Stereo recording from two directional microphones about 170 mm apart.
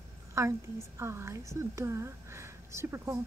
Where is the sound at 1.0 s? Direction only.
15° right (ahead or behind).